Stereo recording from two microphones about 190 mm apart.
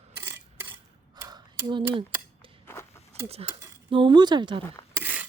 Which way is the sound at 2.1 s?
10° right (ahead or behind).